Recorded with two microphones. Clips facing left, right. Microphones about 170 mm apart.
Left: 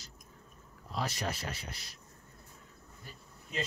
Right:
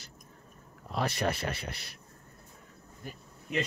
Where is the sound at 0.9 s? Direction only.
60° right (ahead or behind).